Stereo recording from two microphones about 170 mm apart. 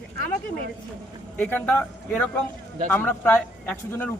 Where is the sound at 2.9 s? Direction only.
10° left (ahead or behind).